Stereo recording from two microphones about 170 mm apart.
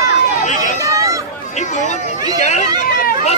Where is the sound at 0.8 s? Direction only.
20° right (ahead or behind).